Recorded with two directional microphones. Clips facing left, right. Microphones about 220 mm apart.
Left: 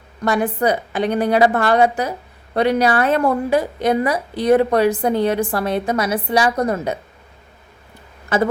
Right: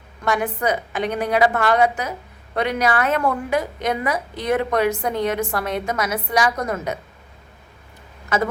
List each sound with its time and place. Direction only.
0.3 s a woman's voice: 35° left (ahead or behind)
8.3 s a woman's voice: 30° left (ahead or behind)